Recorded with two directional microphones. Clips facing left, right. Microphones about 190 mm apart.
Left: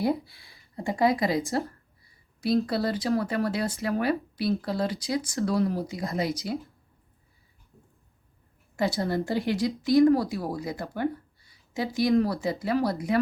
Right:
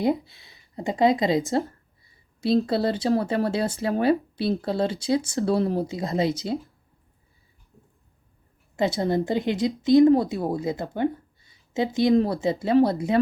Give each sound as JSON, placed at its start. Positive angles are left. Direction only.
{"t": 0.0, "sound": "speech", "side_deg": -20}
{"t": 8.7, "sound": "speech", "side_deg": -20}